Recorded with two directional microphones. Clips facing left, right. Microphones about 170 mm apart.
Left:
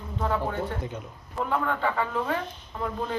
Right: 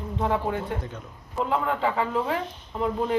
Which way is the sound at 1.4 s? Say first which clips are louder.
Right 2 dB; 20° right (ahead or behind).